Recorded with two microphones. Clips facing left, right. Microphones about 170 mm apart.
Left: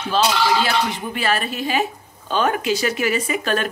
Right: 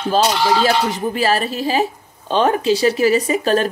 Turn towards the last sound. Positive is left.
turn(degrees=-35)  # may be behind; listen again after turning